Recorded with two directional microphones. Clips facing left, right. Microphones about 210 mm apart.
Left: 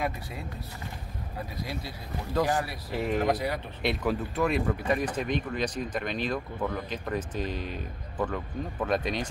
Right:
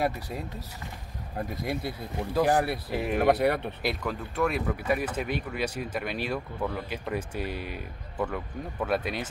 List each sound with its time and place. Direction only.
0.0 s speech: 40° right (ahead or behind)
1.6 s speech: 55° right (ahead or behind)
2.9 s speech: 15° right (ahead or behind)
3.2 s speech: 60° right (ahead or behind)
3.8 s speech: centre (ahead or behind)